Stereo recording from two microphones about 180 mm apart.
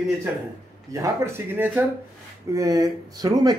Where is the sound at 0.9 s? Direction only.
15° right (ahead or behind).